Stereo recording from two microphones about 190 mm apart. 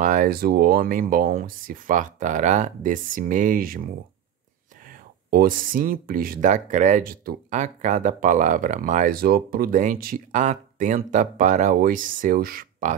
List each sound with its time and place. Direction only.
0.0 s speech: 45° right (ahead or behind)
4.8 s speech: 50° right (ahead or behind)